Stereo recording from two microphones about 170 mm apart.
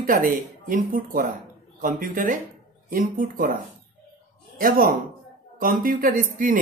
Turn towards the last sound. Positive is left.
turn(degrees=-50)  # may be behind; listen again after turning